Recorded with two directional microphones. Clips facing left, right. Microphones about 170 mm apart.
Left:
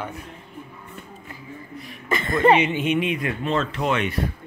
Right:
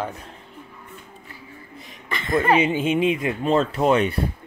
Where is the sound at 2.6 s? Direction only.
30° right (ahead or behind).